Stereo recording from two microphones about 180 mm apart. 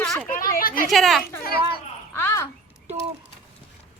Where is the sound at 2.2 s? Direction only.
15° left (ahead or behind).